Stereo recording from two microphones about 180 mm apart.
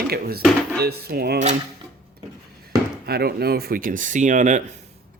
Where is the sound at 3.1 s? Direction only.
60° right (ahead or behind); by 4.6 s 45° right (ahead or behind).